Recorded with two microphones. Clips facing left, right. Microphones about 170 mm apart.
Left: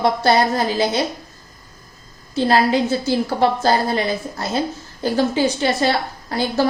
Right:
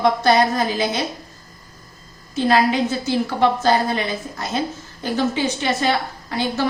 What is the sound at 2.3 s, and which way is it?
A woman's voice, 35° left (ahead or behind).